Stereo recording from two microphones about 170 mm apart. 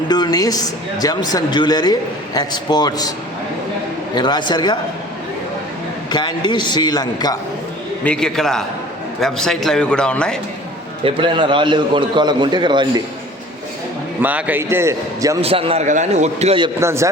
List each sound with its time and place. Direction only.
0.1 s speech: 25° left (ahead or behind)
4.1 s speech: 25° left (ahead or behind)
6.1 s speech: 25° left (ahead or behind)
8.0 s a man's voice: 5° left (ahead or behind)
11.0 s a man's voice: 30° right (ahead or behind)
14.2 s a man's voice: 10° right (ahead or behind)
15.4 s a man's voice: 35° right (ahead or behind)
16.8 s a man's voice: 15° right (ahead or behind)